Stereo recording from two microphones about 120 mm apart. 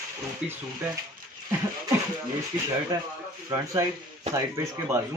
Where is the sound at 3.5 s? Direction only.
25° right (ahead or behind).